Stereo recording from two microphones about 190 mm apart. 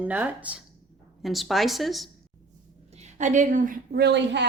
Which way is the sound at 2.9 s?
35° right (ahead or behind).